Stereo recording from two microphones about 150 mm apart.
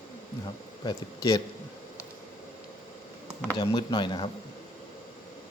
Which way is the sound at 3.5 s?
25° left (ahead or behind).